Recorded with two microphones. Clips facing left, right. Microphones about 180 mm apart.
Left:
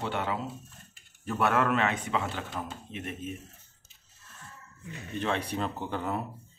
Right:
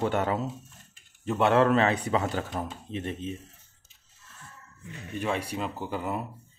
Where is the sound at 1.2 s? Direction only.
25° right (ahead or behind).